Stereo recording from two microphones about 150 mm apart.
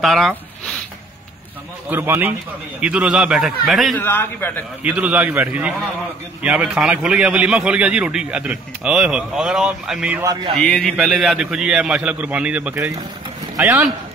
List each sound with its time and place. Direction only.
0.0 s a man's voice: centre (ahead or behind)
1.9 s a man's voice: 15° right (ahead or behind)
3.9 s a man's voice: 15° left (ahead or behind)
4.8 s a man's voice: 10° right (ahead or behind)
10.2 s speech: 25° right (ahead or behind)
10.6 s a man's voice: 5° left (ahead or behind); by 13.0 s 20° right (ahead or behind)